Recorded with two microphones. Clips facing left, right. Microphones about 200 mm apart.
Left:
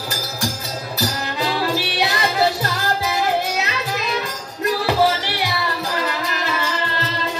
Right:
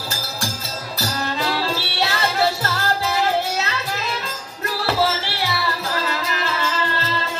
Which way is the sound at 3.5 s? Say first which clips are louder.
Left 1 dB; 15° left (ahead or behind).